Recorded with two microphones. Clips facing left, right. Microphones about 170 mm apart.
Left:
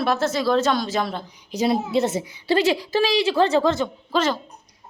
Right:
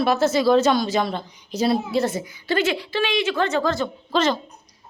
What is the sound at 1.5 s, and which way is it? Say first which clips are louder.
A woman's voice: even; 15° left (ahead or behind).